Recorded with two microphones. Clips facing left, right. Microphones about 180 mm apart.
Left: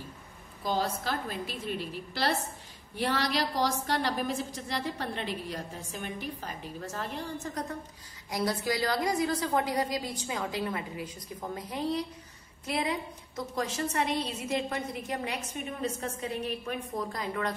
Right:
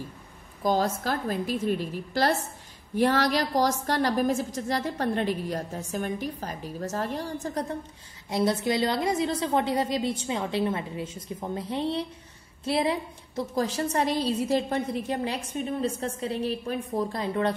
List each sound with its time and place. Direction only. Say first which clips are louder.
0.7 s a woman's voice: right 5 dB; 45° right (ahead or behind); by 17.6 s 30° right (ahead or behind)